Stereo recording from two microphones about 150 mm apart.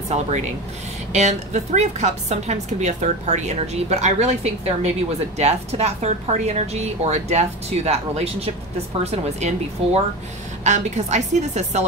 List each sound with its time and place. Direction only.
0.1 s a woman's voice: 50° right (ahead or behind)